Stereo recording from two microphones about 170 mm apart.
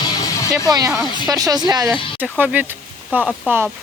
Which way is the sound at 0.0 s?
20° left (ahead or behind).